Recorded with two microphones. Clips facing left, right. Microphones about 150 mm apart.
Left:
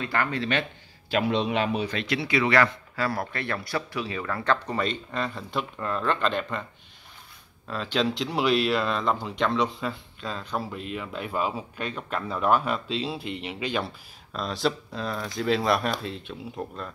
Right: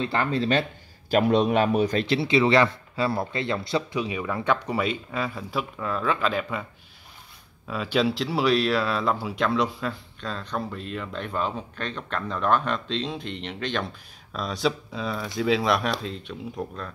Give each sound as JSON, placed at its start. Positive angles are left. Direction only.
{"t": 0.0, "sound": "speech", "side_deg": -25}
{"t": 1.1, "sound": "a man's voice", "side_deg": -45}
{"t": 2.0, "sound": "speech", "side_deg": -25}
{"t": 7.6, "sound": "speech", "side_deg": -10}